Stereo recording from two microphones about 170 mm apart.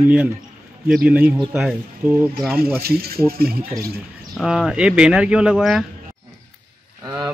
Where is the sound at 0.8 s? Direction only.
5° right (ahead or behind).